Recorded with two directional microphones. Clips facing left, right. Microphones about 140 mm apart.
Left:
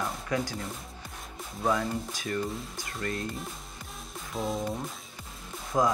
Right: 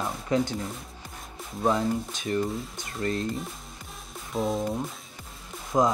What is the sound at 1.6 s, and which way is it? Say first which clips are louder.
Speech: right 3 dB; 20° right (ahead or behind).